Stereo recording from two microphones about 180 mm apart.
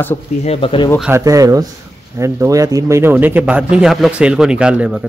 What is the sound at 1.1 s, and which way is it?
A man's voice, 20° right (ahead or behind).